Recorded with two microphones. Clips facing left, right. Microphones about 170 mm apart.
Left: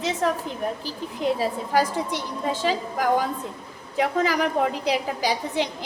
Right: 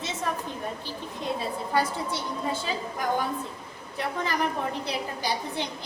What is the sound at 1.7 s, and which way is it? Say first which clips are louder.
A woman's voice: left 3 dB; 90° left.